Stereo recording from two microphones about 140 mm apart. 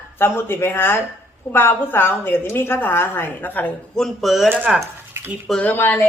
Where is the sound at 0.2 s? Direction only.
15° left (ahead or behind); by 4.4 s centre (ahead or behind).